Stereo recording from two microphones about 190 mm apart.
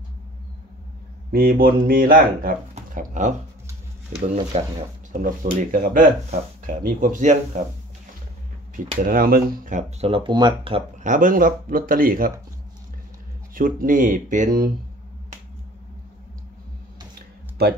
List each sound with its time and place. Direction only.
1.3 s speech: 50° right (ahead or behind)
2.7 s a sound: 40° right (ahead or behind)
4.1 s speech: 35° right (ahead or behind)
8.7 s speech: 50° right (ahead or behind); by 10.8 s 25° right (ahead or behind)
11.0 s speech: 45° right (ahead or behind)
13.6 s speech: 45° right (ahead or behind)
17.6 s speech: 55° right (ahead or behind)